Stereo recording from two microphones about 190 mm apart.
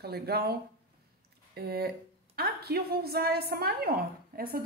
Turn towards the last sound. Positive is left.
turn(degrees=-50)  # may be behind; listen again after turning